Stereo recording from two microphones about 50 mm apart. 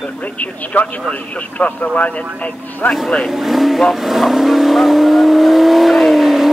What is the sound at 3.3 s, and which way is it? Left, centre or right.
Vehicle, centre.